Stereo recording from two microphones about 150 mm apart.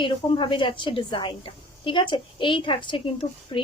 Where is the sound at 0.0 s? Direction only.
35° left (ahead or behind).